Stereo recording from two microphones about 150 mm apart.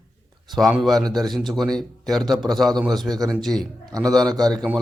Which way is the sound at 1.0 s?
25° right (ahead or behind).